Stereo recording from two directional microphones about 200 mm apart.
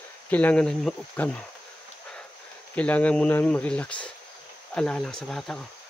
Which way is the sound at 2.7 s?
5° left (ahead or behind).